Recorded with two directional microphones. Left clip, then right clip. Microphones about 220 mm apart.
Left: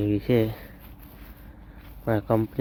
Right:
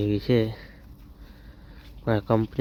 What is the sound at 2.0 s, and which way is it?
Speech, 20° right (ahead or behind).